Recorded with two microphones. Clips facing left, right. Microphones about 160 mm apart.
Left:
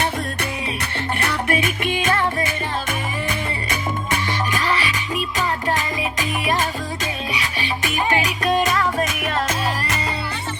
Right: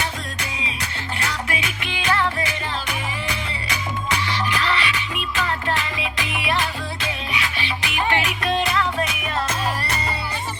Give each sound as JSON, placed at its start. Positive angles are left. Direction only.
{"t": 1.2, "sound": "music", "side_deg": 55}